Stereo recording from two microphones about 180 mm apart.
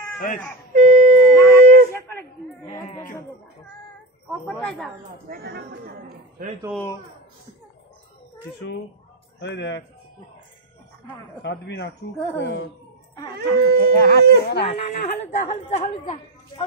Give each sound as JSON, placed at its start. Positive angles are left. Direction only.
{"t": 0.7, "sound": "a sound", "side_deg": -50}
{"t": 2.0, "sound": "a sound", "side_deg": 15}
{"t": 4.3, "sound": "a woman's voice", "side_deg": 5}
{"t": 5.3, "sound": "speech", "side_deg": -60}
{"t": 8.5, "sound": "speech", "side_deg": 10}
{"t": 9.4, "sound": "a man's voice", "side_deg": 85}
{"t": 11.4, "sound": "a man's voice", "side_deg": 75}
{"t": 13.4, "sound": "speech", "side_deg": -65}
{"t": 14.6, "sound": "speech", "side_deg": 30}